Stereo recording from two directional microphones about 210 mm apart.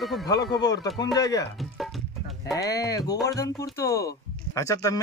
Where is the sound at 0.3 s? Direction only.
20° left (ahead or behind).